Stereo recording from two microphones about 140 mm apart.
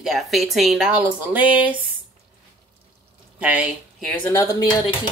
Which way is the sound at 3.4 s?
10° right (ahead or behind).